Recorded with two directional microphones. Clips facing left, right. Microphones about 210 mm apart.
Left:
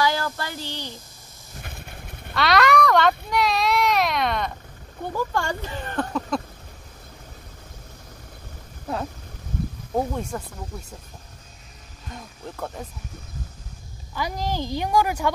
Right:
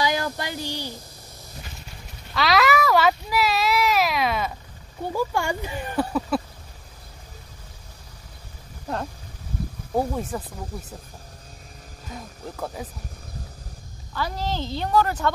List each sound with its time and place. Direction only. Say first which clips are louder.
0.0 s speech: left 1 dB; 15° right (ahead or behind)
1.6 s a sound: left 4 dB; 55° left (ahead or behind)
2.3 s baby cry: left 1 dB; centre (ahead or behind)
5.1 s speech: right 1 dB; 10° right (ahead or behind)
9.9 s speech: right 1 dB; 5° right (ahead or behind)
12.1 s speech: right 1 dB; centre (ahead or behind)
14.1 s speech: left 1 dB; 15° left (ahead or behind)